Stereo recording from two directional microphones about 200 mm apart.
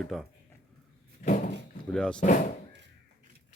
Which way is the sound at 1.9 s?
5° left (ahead or behind).